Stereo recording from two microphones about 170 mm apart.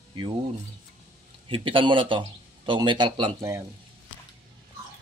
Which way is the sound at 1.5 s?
30° right (ahead or behind).